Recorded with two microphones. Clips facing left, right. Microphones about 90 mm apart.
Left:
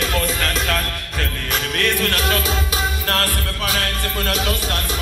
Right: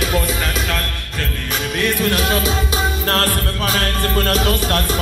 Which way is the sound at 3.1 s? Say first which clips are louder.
Right 3 dB; 35° right (ahead or behind).